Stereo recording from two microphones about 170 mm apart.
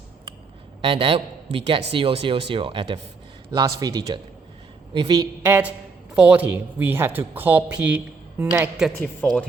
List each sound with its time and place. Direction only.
0.8 s speech: 30° right (ahead or behind)
5.4 s speech: 10° right (ahead or behind)